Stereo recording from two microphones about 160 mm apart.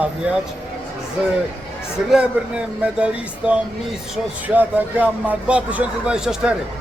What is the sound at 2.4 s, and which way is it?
Speech, 10° right (ahead or behind).